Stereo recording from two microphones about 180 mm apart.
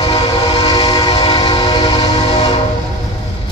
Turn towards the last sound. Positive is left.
turn(degrees=30)  # may be behind; listen again after turning